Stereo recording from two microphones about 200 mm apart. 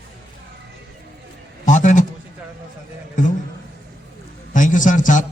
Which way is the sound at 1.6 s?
40° left (ahead or behind).